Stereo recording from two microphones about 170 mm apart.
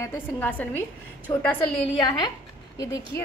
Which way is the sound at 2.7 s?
20° left (ahead or behind).